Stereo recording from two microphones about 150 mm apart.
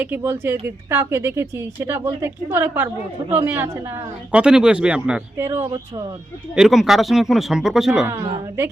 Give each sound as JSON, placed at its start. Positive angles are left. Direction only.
{"t": 0.0, "sound": "speech", "side_deg": -15}
{"t": 6.6, "sound": "speech", "side_deg": 0}
{"t": 8.0, "sound": "speech", "side_deg": -15}